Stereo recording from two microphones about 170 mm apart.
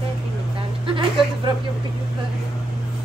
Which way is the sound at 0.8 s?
30° right (ahead or behind).